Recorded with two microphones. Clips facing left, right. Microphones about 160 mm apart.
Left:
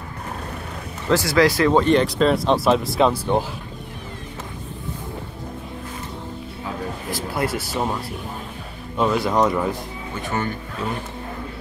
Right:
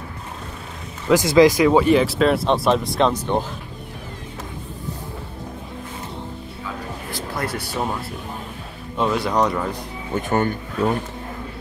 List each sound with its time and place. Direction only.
1.0 s speech: 15° right (ahead or behind); by 3.4 s 5° left (ahead or behind)
7.1 s speech: 5° left (ahead or behind)
10.1 s speech: 50° right (ahead or behind)